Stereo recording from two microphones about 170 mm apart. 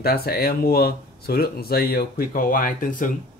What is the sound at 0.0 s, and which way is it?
Speech, 65° left (ahead or behind).